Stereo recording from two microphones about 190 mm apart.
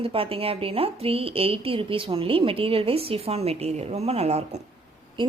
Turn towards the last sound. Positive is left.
turn(degrees=-35)  # may be behind; listen again after turning